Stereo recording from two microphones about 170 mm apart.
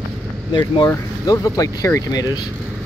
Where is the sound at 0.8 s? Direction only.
20° left (ahead or behind).